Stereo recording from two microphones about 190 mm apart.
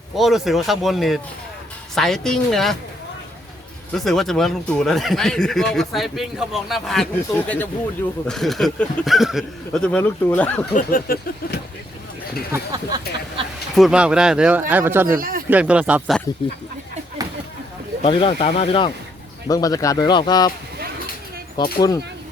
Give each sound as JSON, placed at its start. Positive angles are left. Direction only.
{"t": 0.2, "sound": "speech", "side_deg": 0}
{"t": 3.9, "sound": "speech", "side_deg": 0}
{"t": 10.8, "sound": "speech", "side_deg": 50}
{"t": 12.5, "sound": "speech", "side_deg": -20}
{"t": 13.7, "sound": "speech", "side_deg": -5}
{"t": 15.2, "sound": "speech", "side_deg": -50}
{"t": 15.4, "sound": "speech", "side_deg": -5}
{"t": 18.0, "sound": "speech", "side_deg": 30}
{"t": 19.5, "sound": "speech", "side_deg": 20}
{"t": 21.6, "sound": "speech", "side_deg": 20}